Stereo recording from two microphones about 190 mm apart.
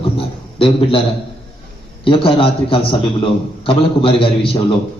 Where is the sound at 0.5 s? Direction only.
30° left (ahead or behind).